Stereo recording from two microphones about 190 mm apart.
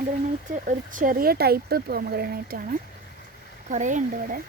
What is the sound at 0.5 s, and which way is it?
Speech, 45° right (ahead or behind).